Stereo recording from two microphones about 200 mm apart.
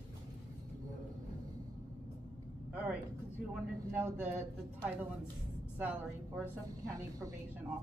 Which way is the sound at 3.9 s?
10° right (ahead or behind).